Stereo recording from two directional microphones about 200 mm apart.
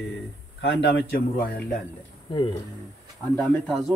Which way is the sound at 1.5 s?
45° left (ahead or behind).